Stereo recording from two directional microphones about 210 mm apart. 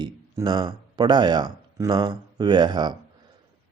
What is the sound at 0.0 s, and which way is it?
Speech, 20° right (ahead or behind).